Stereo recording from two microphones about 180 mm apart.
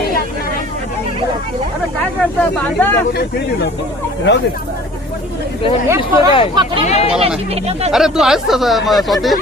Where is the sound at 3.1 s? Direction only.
70° left (ahead or behind).